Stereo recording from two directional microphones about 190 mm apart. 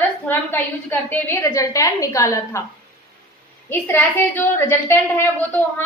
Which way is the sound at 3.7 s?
10° left (ahead or behind).